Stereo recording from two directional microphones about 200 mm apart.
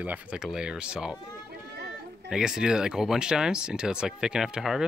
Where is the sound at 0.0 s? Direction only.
5° right (ahead or behind).